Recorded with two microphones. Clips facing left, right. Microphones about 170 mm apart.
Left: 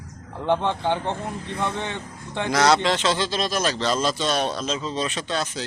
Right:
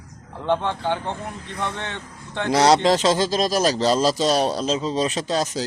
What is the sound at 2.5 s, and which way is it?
A man's voice, 30° right (ahead or behind).